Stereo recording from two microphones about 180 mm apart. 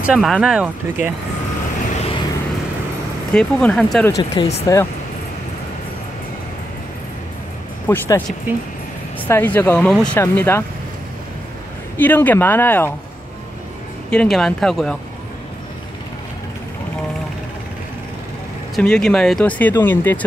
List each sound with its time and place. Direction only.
0.0 s speech: 5° right (ahead or behind)
2.0 s vehicle: 30° left (ahead or behind)
3.3 s speech: 5° left (ahead or behind)
4.1 s speech: 25° left (ahead or behind)
7.9 s speech: 10° left (ahead or behind)
9.3 s speech: 10° left (ahead or behind)
12.0 s speech: 10° left (ahead or behind)
14.1 s speech: centre (ahead or behind)
18.8 s speech: 5° left (ahead or behind)